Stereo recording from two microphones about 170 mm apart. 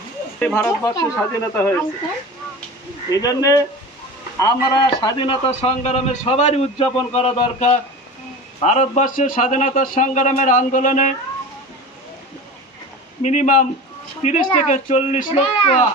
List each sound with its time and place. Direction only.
0.3 s speech: 10° left (ahead or behind)
3.1 s a man's voice: 20° left (ahead or behind); by 11.1 s 45° left (ahead or behind)
13.2 s a man's voice: 45° left (ahead or behind)